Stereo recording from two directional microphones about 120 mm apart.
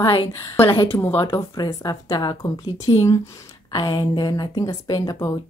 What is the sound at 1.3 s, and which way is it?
Speech, 35° left (ahead or behind).